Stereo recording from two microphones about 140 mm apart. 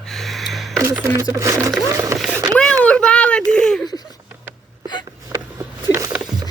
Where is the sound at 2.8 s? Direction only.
10° left (ahead or behind).